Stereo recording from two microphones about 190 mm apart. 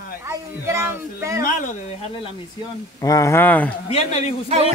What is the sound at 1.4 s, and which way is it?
Speech, 40° left (ahead or behind).